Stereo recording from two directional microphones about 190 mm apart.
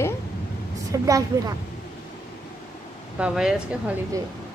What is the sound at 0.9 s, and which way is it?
Speech, 15° right (ahead or behind).